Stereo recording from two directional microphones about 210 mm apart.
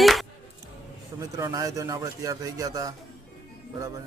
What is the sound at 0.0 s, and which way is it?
Music, centre (ahead or behind).